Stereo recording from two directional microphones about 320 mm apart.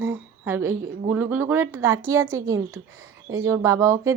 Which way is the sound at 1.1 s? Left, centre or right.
Centre.